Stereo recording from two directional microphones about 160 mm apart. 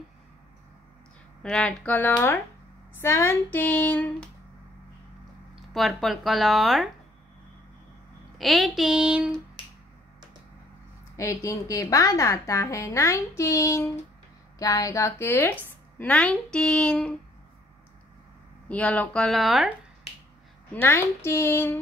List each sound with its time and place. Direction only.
1.4 s a woman's voice: 5° left (ahead or behind)
5.7 s speech: centre (ahead or behind)
8.4 s speech: centre (ahead or behind)
11.1 s a woman's voice: 20° left (ahead or behind)
18.7 s speech: 10° left (ahead or behind)
20.7 s a woman's voice: 15° left (ahead or behind)